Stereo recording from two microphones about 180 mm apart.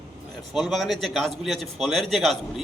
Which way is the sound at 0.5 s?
Centre (ahead or behind).